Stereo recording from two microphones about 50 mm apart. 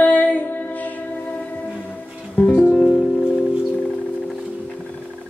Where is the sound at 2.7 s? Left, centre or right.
Centre.